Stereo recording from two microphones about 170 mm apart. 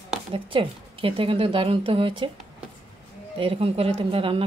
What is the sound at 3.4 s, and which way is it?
A woman's voice, 35° right (ahead or behind).